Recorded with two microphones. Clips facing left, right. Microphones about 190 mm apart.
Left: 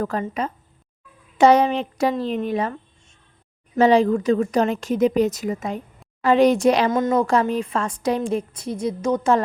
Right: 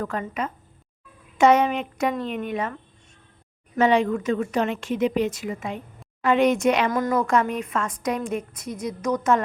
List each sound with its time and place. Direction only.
0.0 s a woman's voice: 35° left (ahead or behind)
3.8 s a woman's voice: 35° left (ahead or behind)
6.9 s a woman's voice: 25° left (ahead or behind)